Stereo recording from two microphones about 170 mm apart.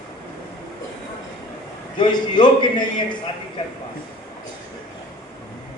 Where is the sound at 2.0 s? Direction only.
25° left (ahead or behind).